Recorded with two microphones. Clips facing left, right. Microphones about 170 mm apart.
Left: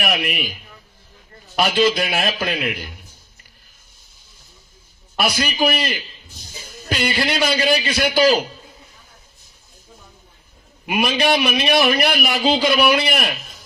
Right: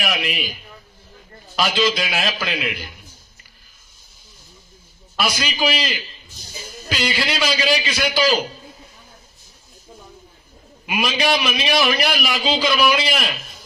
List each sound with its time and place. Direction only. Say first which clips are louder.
0.1 s a man's voice: left 2 dB; 60° left (ahead or behind)
1.5 s a man's voice: left 3 dB; 60° left (ahead or behind)
5.1 s a man's voice: left 2 dB; 55° left (ahead or behind)
10.8 s a man's voice: left 2 dB; 55° left (ahead or behind)